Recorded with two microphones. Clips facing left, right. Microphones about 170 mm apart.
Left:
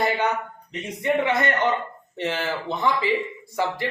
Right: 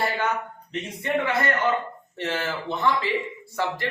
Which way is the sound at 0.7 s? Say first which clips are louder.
Left 3 dB; 15° left (ahead or behind).